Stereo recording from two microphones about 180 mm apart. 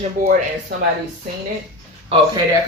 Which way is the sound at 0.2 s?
45° right (ahead or behind).